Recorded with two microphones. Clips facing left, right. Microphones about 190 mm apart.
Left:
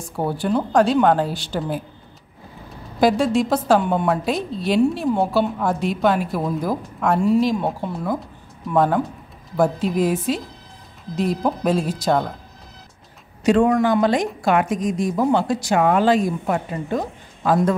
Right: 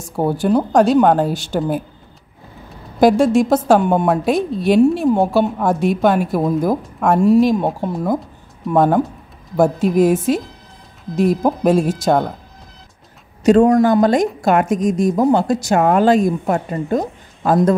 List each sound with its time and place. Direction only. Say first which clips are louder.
0.0 s a woman's voice: right 5 dB; 45° right (ahead or behind)
3.0 s a woman's voice: right 5 dB; 50° right (ahead or behind)
13.4 s a woman's voice: right 5 dB; 40° right (ahead or behind)